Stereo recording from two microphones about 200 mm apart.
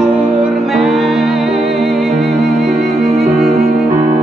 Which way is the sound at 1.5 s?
30° right (ahead or behind).